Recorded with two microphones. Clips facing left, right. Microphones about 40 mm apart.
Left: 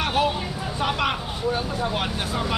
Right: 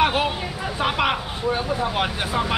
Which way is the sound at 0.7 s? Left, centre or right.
Centre.